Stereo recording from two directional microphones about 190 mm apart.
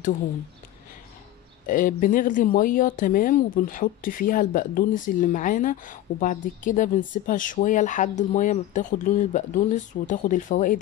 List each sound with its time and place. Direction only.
1.7 s speech: 45° left (ahead or behind)